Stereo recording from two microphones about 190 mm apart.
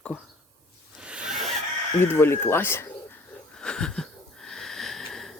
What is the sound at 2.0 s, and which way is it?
Speech, 10° left (ahead or behind).